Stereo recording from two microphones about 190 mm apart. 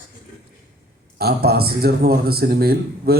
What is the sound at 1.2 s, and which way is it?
Speech, 55° right (ahead or behind).